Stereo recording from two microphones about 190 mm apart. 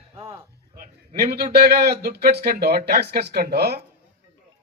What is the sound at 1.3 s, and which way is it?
A man's voice, 55° right (ahead or behind).